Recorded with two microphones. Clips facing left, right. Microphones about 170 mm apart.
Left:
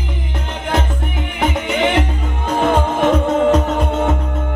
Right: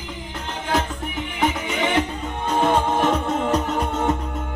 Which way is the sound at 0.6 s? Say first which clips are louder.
Left 3 dB; 65° left (ahead or behind).